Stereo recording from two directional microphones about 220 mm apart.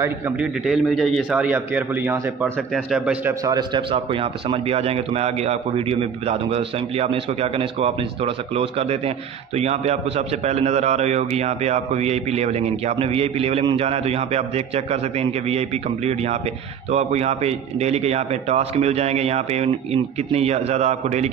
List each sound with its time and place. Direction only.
0.0 s a man's voice: 5° right (ahead or behind)
3.4 s a man's voice: 20° right (ahead or behind)